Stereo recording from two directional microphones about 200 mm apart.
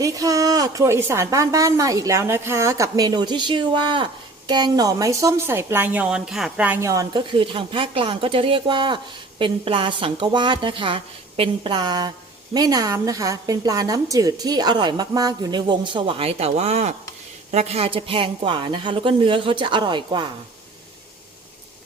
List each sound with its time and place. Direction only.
0.0 s a woman's voice: 15° right (ahead or behind)